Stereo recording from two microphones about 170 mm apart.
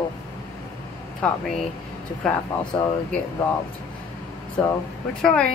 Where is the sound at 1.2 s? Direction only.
5° left (ahead or behind).